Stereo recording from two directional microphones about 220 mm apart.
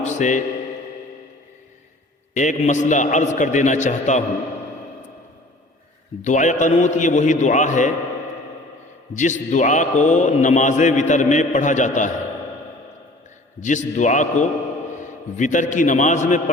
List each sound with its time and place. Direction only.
0.0 s a sound: 35° left (ahead or behind)
2.3 s a man's voice: 35° left (ahead or behind)
6.2 s a man's voice: 35° left (ahead or behind)
9.1 s a man's voice: 35° left (ahead or behind)
13.6 s a man's voice: 35° left (ahead or behind)